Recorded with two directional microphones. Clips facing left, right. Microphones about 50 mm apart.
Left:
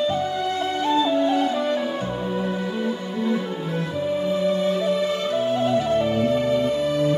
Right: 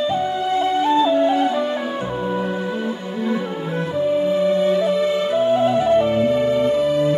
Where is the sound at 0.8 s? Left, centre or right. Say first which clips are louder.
Right 2 dB; centre.